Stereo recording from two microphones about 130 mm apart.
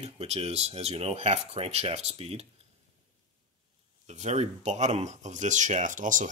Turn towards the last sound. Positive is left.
turn(degrees=-80)